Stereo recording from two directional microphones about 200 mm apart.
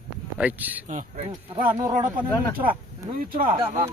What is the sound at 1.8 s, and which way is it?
Speech, 20° right (ahead or behind).